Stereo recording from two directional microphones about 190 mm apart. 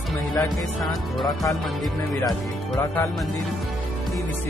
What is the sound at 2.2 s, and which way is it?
Speech, 20° left (ahead or behind).